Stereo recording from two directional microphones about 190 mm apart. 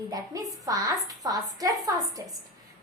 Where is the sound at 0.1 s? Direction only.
20° right (ahead or behind).